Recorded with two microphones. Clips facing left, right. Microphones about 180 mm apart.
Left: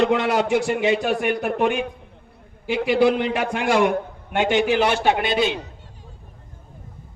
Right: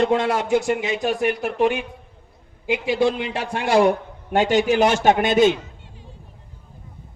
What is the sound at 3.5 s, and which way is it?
A man's voice, 35° right (ahead or behind).